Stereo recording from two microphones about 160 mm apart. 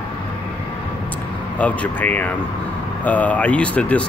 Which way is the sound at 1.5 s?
10° left (ahead or behind).